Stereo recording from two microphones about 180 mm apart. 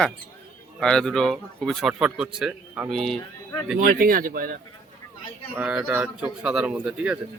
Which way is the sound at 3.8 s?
55° right (ahead or behind).